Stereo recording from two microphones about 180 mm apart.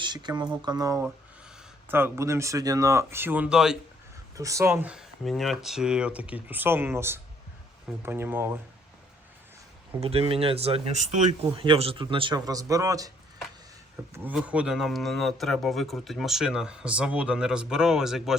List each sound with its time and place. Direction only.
0.0 s a man's voice: 25° right (ahead or behind); by 3.8 s 5° right (ahead or behind)
4.4 s speech: 15° right (ahead or behind)
10.0 s speech: 35° right (ahead or behind)
11.5 s a man's voice: 30° right (ahead or behind)
14.1 s speech: 10° right (ahead or behind)